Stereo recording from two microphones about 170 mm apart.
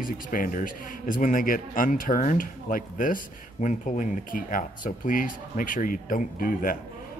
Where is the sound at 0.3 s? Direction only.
55° left (ahead or behind).